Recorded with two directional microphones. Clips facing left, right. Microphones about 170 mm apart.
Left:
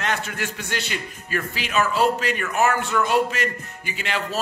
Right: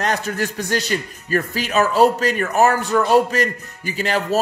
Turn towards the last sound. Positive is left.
turn(degrees=-40)  # may be behind; listen again after turning